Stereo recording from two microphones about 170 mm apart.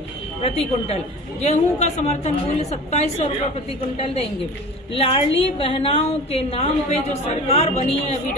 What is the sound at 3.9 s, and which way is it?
A woman's voice, 35° left (ahead or behind).